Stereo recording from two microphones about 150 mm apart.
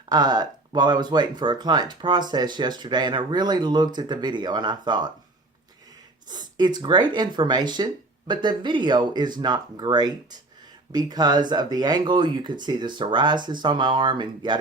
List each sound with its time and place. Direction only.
0.1 s speech: 25° right (ahead or behind)
6.2 s speech: 30° right (ahead or behind)